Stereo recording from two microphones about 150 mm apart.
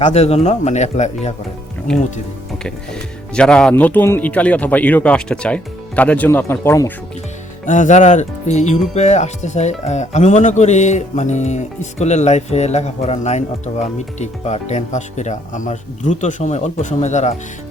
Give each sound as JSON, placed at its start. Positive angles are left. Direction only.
{"t": 0.0, "sound": "speech", "side_deg": 45}
{"t": 1.9, "sound": "speech", "side_deg": 5}
{"t": 3.3, "sound": "speech", "side_deg": 5}
{"t": 7.6, "sound": "speech", "side_deg": 55}